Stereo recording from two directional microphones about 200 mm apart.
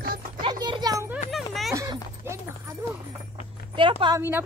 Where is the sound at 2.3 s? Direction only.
10° right (ahead or behind).